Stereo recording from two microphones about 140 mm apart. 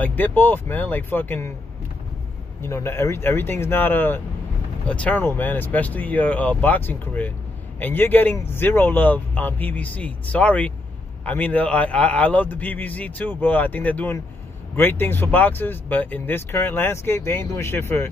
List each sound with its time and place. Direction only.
0.0 s speech: 10° left (ahead or behind)
2.6 s speech: 20° left (ahead or behind)